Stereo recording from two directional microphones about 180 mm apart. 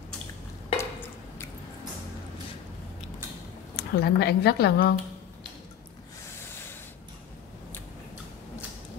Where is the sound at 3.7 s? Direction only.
60° left (ahead or behind).